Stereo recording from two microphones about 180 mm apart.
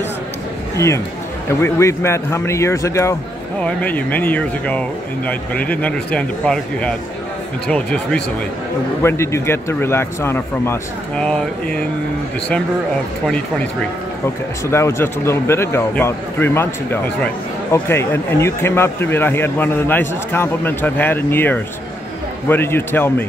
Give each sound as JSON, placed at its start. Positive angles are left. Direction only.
{"t": 0.7, "sound": "a man's voice", "side_deg": 15}
{"t": 14.2, "sound": "a man's voice", "side_deg": 15}